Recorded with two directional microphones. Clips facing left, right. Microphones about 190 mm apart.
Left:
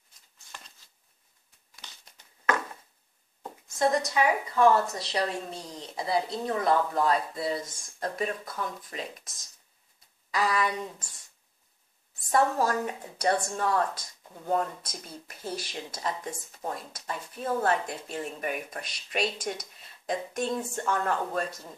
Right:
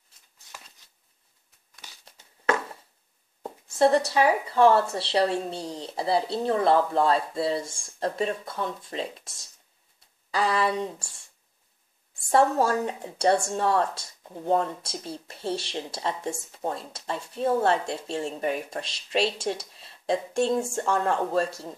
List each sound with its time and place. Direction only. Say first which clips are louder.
3.7 s a woman's voice: right 5 dB; 30° right (ahead or behind)
10.3 s a woman's voice: right 3 dB; 30° right (ahead or behind)
12.1 s a woman's voice: right 4 dB; 30° right (ahead or behind)